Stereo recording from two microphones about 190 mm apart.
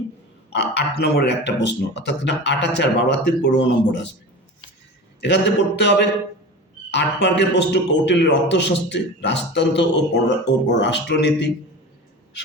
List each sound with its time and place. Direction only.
0.5 s a man's voice: 65° left (ahead or behind)
5.2 s a man's voice: 65° left (ahead or behind)